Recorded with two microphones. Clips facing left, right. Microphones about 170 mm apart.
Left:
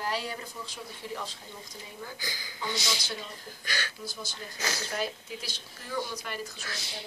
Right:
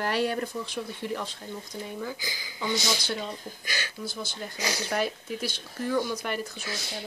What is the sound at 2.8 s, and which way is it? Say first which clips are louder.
Speech: right 5 dB; 50° right (ahead or behind).